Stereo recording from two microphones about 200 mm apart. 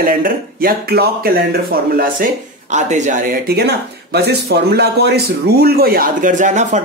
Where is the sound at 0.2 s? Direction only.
50° right (ahead or behind).